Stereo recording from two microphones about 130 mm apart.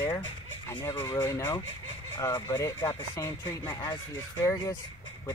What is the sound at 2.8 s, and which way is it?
Speech, 30° left (ahead or behind).